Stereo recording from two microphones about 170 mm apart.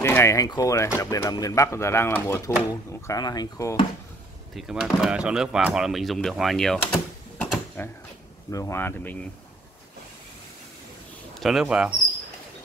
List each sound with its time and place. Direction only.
0.0 s speech: 15° left (ahead or behind)
4.6 s speech: 5° right (ahead or behind)
11.3 s speech: centre (ahead or behind)